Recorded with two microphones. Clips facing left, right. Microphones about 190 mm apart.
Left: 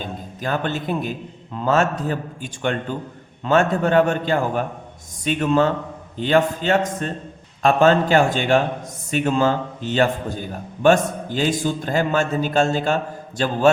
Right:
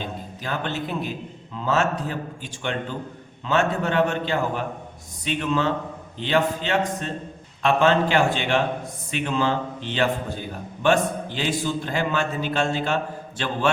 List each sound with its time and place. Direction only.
0.4 s a man's voice: 50° left (ahead or behind)